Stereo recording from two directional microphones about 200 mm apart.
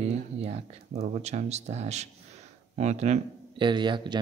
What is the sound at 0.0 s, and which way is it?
Speech, 30° right (ahead or behind).